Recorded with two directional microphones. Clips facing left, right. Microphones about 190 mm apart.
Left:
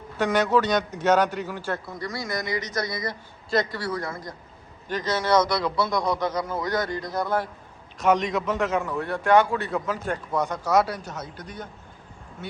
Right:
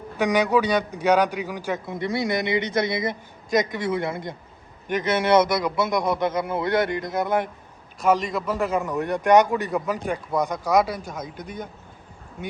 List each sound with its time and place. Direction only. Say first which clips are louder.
0.2 s a man's voice: right 1 dB; 15° right (ahead or behind)
7.9 s speech: even; 5° right (ahead or behind)